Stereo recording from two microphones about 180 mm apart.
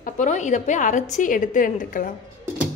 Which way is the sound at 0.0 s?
40° left (ahead or behind).